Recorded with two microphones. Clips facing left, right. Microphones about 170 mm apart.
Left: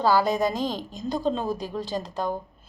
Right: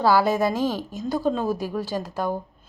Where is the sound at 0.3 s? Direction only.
15° left (ahead or behind).